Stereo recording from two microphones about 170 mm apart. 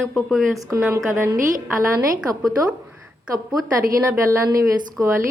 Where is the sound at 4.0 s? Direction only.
15° right (ahead or behind).